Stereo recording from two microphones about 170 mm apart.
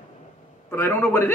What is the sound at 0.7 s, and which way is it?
Speech, 15° left (ahead or behind).